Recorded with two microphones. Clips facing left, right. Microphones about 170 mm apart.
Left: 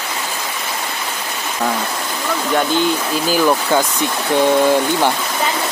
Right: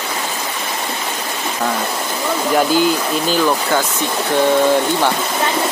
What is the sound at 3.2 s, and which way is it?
Speech, 5° left (ahead or behind).